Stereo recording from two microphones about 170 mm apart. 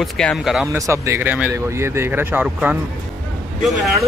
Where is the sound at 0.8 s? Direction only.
15° right (ahead or behind).